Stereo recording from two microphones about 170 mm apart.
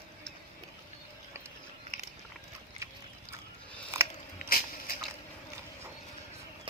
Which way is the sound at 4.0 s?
15° right (ahead or behind).